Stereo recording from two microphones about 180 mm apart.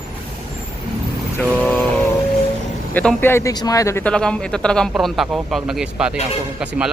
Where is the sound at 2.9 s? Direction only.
10° left (ahead or behind).